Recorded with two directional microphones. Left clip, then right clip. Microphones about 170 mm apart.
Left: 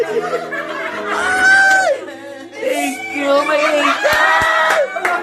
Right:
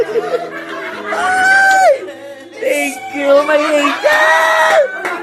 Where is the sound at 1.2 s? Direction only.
10° right (ahead or behind).